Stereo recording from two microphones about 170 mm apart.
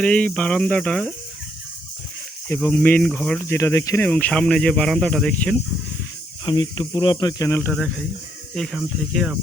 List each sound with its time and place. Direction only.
0.0 s speech: 5° left (ahead or behind)
2.5 s speech: 10° left (ahead or behind)
6.4 s speech: 25° left (ahead or behind)
8.5 s speech: centre (ahead or behind)